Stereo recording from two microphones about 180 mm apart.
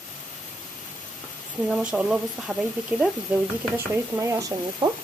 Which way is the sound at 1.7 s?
5° right (ahead or behind).